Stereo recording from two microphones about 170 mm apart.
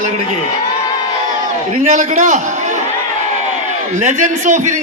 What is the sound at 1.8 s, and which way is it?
Speech, 50° right (ahead or behind).